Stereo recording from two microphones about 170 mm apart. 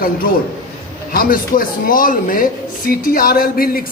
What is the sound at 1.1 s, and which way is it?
Speech, 55° left (ahead or behind).